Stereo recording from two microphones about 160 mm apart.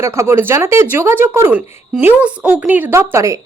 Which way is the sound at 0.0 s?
15° right (ahead or behind).